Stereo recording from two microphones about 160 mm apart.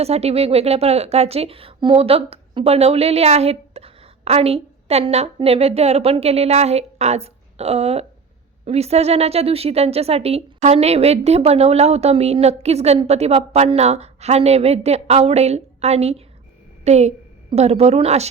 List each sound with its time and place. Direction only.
0.0 s a woman's voice: 40° right (ahead or behind)